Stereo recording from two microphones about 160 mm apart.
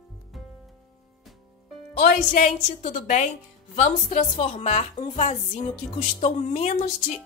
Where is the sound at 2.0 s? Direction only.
55° left (ahead or behind).